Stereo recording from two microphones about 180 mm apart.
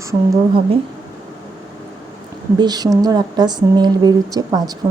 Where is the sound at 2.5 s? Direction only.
20° right (ahead or behind).